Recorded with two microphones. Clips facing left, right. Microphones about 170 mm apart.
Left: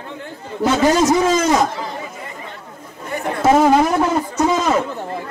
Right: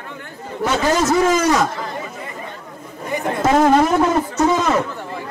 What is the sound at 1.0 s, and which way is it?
Speech, 20° left (ahead or behind).